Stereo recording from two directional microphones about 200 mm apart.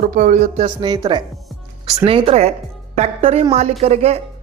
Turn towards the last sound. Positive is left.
turn(degrees=-30)  # may be behind; listen again after turning